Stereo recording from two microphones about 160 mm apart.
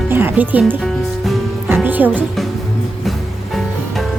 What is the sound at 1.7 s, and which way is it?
Music, 10° right (ahead or behind).